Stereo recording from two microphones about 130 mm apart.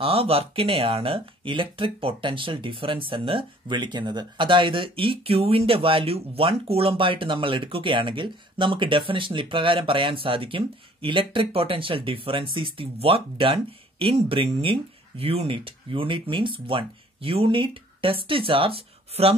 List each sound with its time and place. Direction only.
0.0 s speech: 45° right (ahead or behind)